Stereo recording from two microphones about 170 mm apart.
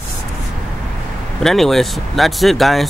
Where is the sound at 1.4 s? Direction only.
Centre (ahead or behind).